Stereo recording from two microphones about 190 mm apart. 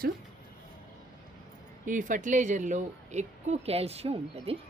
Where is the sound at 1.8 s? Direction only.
45° right (ahead or behind).